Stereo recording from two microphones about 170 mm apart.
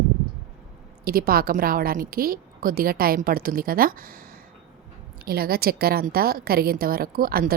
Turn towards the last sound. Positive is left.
turn(degrees=-60)  # may be behind; listen again after turning